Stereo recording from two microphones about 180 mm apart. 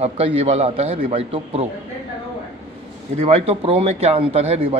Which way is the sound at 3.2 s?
30° right (ahead or behind).